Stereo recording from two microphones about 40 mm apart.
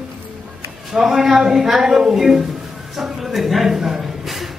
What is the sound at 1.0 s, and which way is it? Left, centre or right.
A woman's voice, centre.